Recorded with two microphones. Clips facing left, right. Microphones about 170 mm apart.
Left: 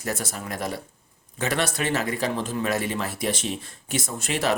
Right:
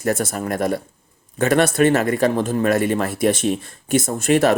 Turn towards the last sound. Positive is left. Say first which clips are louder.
# right 9 dB
turn(degrees=-50)  # may be behind; listen again after turning